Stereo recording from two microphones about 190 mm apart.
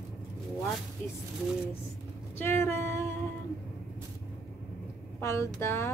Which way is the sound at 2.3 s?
10° left (ahead or behind).